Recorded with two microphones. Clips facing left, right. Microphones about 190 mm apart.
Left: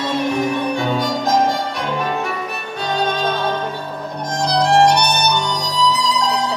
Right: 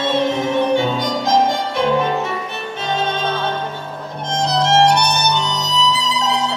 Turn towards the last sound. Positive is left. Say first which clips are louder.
# left 1 dB
turn(degrees=-20)  # may be behind; listen again after turning